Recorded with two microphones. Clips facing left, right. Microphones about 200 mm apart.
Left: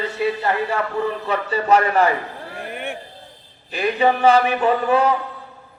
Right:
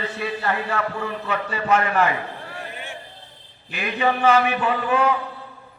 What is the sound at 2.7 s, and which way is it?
Vehicle, 60° left (ahead or behind).